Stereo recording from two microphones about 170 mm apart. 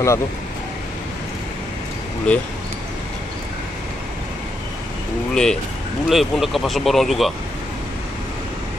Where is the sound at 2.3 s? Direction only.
5° left (ahead or behind).